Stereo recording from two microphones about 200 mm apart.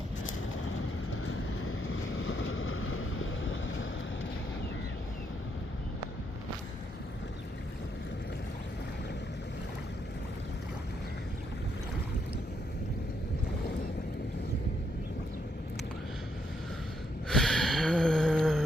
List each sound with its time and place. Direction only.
1.2 s vehicle: 90° left
17.2 s gasp: centre (ahead or behind)